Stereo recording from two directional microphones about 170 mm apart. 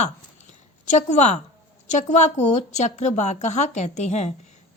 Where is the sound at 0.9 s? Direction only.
45° left (ahead or behind).